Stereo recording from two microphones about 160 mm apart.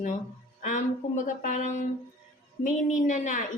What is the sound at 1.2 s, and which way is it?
Speech, 50° left (ahead or behind).